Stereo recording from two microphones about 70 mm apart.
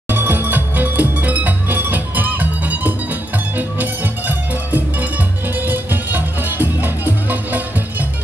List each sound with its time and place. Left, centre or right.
0.1 s music: right